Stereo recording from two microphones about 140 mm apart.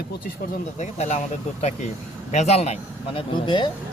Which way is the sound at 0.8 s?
55° left (ahead or behind).